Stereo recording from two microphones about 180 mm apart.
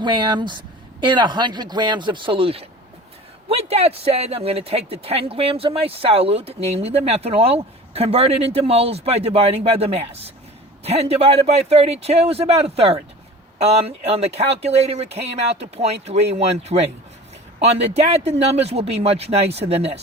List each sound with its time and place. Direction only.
0.0 s a man's voice: 25° right (ahead or behind)